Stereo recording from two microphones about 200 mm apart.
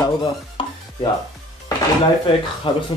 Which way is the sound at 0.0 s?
25° left (ahead or behind).